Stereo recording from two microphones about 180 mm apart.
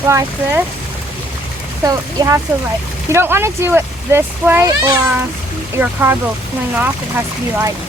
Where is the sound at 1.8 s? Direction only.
20° right (ahead or behind).